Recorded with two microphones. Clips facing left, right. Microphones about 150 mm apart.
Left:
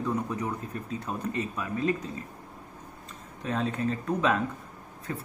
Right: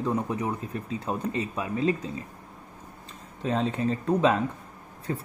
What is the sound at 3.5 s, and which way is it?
Speech, 30° right (ahead or behind).